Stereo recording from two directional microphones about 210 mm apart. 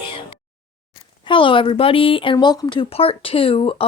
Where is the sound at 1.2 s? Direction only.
25° left (ahead or behind).